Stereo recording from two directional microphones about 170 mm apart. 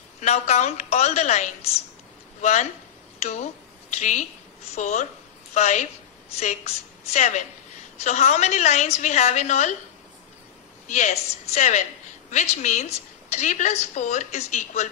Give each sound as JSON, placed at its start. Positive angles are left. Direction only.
{"t": 0.2, "sound": "a woman's voice", "side_deg": 40}
{"t": 10.9, "sound": "a woman's voice", "side_deg": 45}